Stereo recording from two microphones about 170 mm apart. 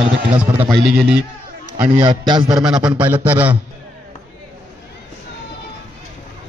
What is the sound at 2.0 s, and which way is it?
Speech, 30° right (ahead or behind).